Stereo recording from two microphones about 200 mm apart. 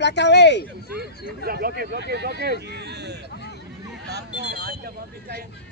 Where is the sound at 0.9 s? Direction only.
55° right (ahead or behind).